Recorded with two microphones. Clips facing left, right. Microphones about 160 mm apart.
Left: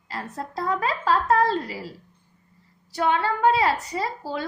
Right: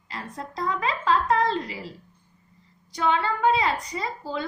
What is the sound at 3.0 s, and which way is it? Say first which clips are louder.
A woman's voice: left 2 dB; 50° left (ahead or behind).